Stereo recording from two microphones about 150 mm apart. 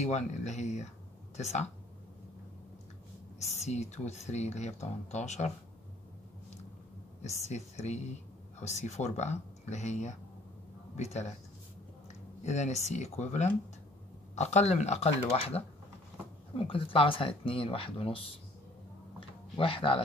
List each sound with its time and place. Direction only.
0.0 s speech: 50° left (ahead or behind)
3.3 s speech: 50° left (ahead or behind)
7.4 s speech: 50° left (ahead or behind)
12.4 s speech: 50° left (ahead or behind)
19.6 s speech: 35° left (ahead or behind)